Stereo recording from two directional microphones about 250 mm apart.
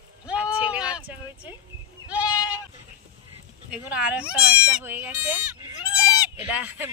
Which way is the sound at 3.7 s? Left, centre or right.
Centre.